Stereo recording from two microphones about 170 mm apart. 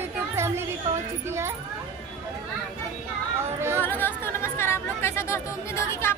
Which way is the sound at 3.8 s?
10° left (ahead or behind).